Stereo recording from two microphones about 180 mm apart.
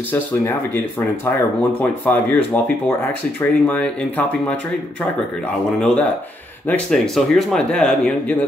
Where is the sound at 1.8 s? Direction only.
10° left (ahead or behind).